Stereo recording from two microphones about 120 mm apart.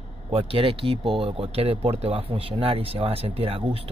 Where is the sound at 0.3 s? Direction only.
50° right (ahead or behind).